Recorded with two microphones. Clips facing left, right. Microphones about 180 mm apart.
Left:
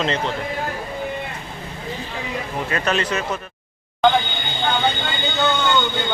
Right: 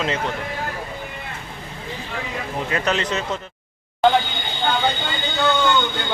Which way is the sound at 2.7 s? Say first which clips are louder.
Left 1 dB; 20° right (ahead or behind).